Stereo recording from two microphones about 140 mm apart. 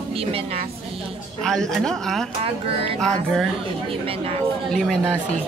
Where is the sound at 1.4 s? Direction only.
5° left (ahead or behind).